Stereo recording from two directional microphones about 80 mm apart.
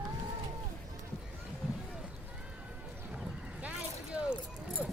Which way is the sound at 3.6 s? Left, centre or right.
Centre.